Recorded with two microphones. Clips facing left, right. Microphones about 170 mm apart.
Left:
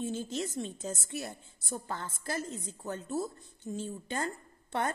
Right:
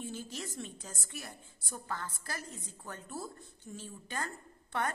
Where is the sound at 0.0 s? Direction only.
25° left (ahead or behind).